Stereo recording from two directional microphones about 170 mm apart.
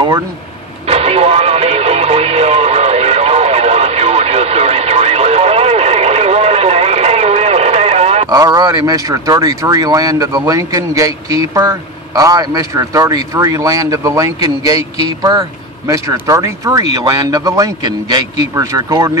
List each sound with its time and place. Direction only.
0.8 s radio: 35° right (ahead or behind)
8.3 s speech: 20° right (ahead or behind)
15.9 s speech: 20° right (ahead or behind)